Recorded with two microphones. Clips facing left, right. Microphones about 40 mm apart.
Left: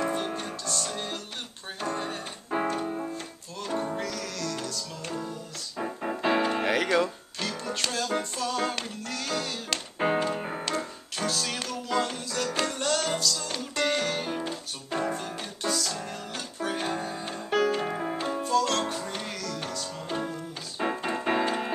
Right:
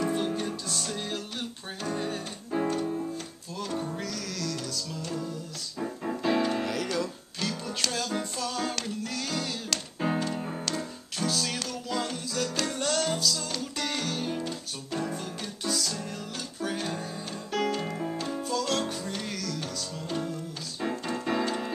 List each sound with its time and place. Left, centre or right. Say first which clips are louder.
0.0 s music: even; centre
0.7 s music: left 1 dB; centre
2.5 s keyboard: even; left
3.9 s music: left 2 dB; centre
5.8 s music: left 1 dB; left
6.6 s music: left 5 dB; left
7.3 s music: even; centre
9.9 s music: left 4 dB; left
10.6 s music: left 2 dB; centre
13.5 s music: left 4 dB; centre
15.1 s piano: left 1 dB; centre
16.5 s music: left 2 dB; centre
18.4 s music: left 4 dB; centre; by 21.7 s left